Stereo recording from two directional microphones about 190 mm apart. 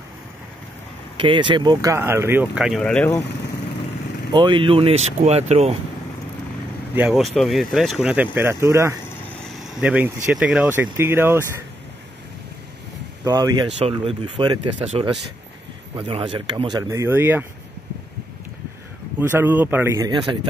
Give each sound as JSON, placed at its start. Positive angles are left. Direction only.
{"t": 1.1, "sound": "speech", "side_deg": -25}
{"t": 4.3, "sound": "speech", "side_deg": -25}
{"t": 7.0, "sound": "speech", "side_deg": -5}
{"t": 9.4, "sound": "speech", "side_deg": -5}
{"t": 13.2, "sound": "speech", "side_deg": -20}
{"t": 19.1, "sound": "speech", "side_deg": -10}